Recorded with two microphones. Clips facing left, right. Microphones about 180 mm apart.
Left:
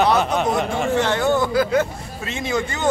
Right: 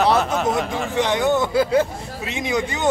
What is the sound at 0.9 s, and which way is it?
Speech, 15° right (ahead or behind).